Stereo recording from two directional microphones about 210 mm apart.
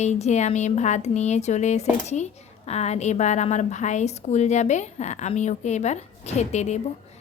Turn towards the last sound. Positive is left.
turn(degrees=35)  # may be behind; listen again after turning